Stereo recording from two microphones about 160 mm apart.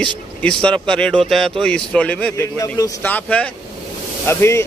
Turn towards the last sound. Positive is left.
turn(degrees=15)  # may be behind; listen again after turning